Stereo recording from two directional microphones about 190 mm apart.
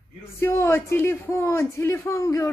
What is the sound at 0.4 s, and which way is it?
Speech, 15° left (ahead or behind).